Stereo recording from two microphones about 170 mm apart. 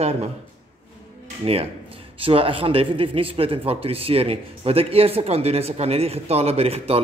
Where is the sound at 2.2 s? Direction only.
30° right (ahead or behind).